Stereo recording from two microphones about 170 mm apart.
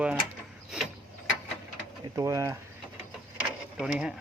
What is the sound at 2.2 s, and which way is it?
Speech, 20° right (ahead or behind).